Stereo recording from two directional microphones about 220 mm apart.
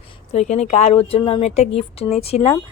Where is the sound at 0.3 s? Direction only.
30° left (ahead or behind).